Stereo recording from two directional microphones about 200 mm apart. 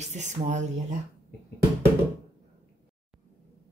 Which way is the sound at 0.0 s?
35° right (ahead or behind).